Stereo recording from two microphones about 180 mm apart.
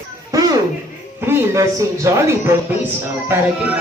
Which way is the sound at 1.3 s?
15° right (ahead or behind).